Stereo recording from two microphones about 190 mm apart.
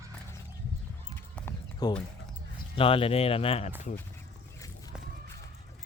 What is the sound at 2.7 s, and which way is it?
Speech, 30° left (ahead or behind).